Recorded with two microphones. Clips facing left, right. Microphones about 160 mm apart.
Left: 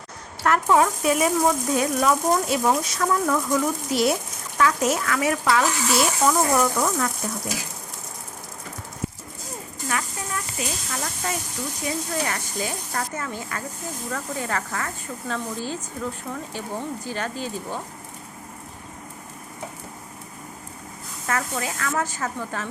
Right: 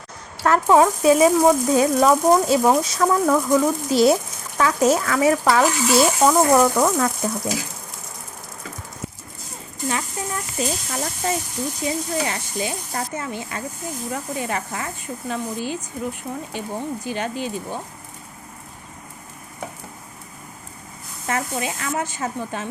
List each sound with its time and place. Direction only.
0.4 s speech: 30° right (ahead or behind)
6.2 s speech: 45° right (ahead or behind)
9.9 s speech: 25° right (ahead or behind)
11.9 s speech: 20° right (ahead or behind)
21.2 s speech: 20° right (ahead or behind)